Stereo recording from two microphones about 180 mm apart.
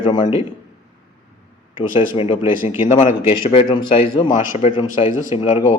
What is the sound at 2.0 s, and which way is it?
Speech, 30° left (ahead or behind).